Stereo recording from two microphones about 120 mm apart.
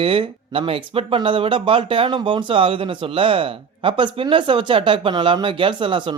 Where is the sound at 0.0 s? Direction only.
50° right (ahead or behind).